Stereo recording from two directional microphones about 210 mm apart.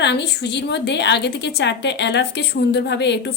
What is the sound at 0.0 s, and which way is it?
A woman's voice, 55° left (ahead or behind).